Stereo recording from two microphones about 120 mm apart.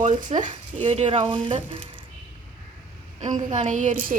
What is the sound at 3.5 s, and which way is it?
Speech, 90° right.